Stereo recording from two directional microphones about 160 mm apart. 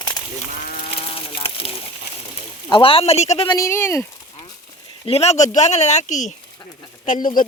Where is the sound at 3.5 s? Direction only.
20° left (ahead or behind).